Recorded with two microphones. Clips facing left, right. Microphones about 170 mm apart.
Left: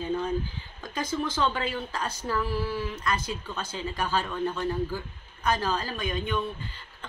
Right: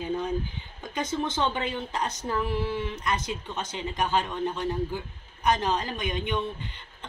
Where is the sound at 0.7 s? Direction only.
20° right (ahead or behind).